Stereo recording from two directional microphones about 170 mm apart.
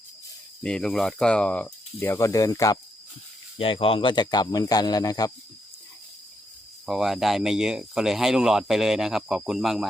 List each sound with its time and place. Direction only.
0.6 s speech: 5° left (ahead or behind); by 2.7 s 20° left (ahead or behind)
3.6 s speech: 30° left (ahead or behind)
6.8 s speech: centre (ahead or behind)